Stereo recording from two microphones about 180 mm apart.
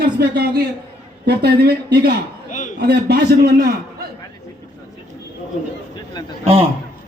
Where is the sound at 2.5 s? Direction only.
45° left (ahead or behind).